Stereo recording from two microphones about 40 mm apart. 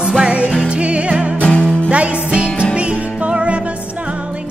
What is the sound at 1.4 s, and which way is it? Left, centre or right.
Music, left.